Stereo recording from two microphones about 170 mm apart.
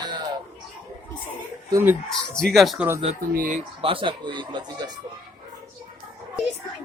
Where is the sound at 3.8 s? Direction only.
30° right (ahead or behind).